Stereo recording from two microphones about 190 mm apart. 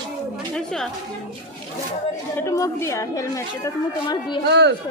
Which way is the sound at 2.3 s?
15° left (ahead or behind).